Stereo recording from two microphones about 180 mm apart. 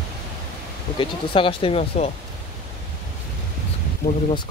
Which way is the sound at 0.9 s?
30° left (ahead or behind).